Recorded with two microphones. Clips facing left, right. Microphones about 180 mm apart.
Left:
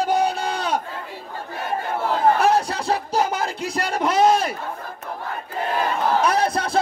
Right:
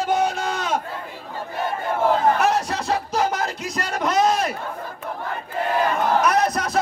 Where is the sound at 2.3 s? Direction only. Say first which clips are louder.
Left 2 dB; 30° left (ahead or behind).